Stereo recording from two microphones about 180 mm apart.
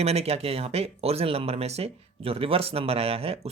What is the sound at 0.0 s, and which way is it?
Speech, 35° right (ahead or behind).